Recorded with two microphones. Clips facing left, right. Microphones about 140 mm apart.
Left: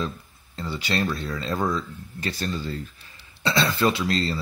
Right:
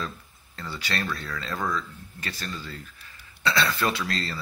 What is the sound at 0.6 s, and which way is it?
Speech, 20° left (ahead or behind).